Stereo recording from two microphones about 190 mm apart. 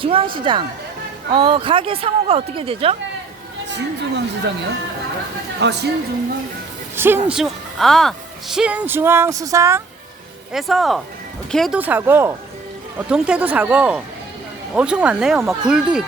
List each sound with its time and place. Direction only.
0.0 s speech: 30° right (ahead or behind)
3.7 s speech: 65° right (ahead or behind)
5.5 s speech: 60° right (ahead or behind)
6.9 s a woman's voice: 10° right (ahead or behind)
10.5 s a woman's voice: centre (ahead or behind)